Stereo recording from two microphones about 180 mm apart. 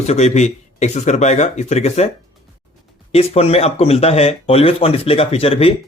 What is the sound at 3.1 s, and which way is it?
Speech, 35° left (ahead or behind).